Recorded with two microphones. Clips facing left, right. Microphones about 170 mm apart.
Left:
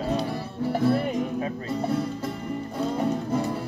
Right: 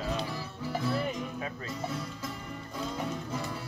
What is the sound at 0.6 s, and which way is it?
Music, 55° left (ahead or behind).